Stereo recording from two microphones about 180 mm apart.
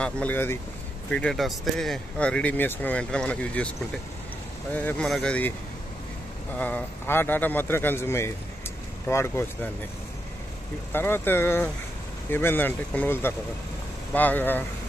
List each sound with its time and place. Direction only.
0.0 s speech: 10° left (ahead or behind)
4.7 s speech: 5° left (ahead or behind)
6.6 s speech: 10° left (ahead or behind)
10.9 s speech: 10° left (ahead or behind)